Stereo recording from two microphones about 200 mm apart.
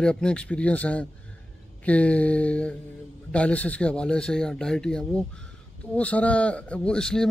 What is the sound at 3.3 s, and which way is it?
Speech, 5° left (ahead or behind).